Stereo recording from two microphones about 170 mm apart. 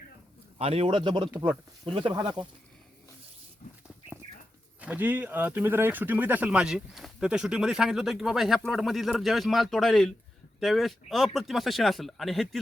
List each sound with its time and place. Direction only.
0.6 s speech: 35° right (ahead or behind)
4.8 s speech: 10° right (ahead or behind)